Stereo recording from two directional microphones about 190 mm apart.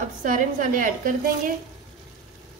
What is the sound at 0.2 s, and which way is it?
A woman's voice, 45° right (ahead or behind).